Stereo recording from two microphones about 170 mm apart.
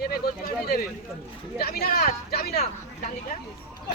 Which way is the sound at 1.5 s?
65° left (ahead or behind).